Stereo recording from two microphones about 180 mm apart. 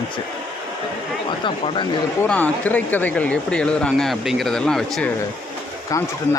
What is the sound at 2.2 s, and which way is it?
Speech, 5° left (ahead or behind).